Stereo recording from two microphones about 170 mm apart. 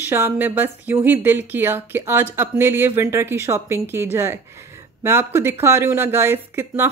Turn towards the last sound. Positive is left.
turn(degrees=-15)  # may be behind; listen again after turning